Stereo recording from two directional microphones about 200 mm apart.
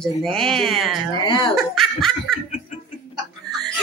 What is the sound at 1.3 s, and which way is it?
Speech, 25° left (ahead or behind).